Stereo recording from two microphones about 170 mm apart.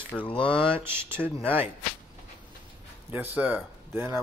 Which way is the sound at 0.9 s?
15° right (ahead or behind).